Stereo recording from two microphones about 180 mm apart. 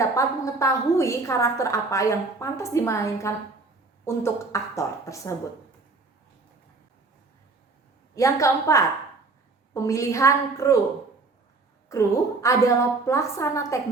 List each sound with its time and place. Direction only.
0.0 s a woman's voice: 15° left (ahead or behind)
8.1 s a woman's voice: 15° left (ahead or behind)
11.9 s a woman's voice: 15° left (ahead or behind)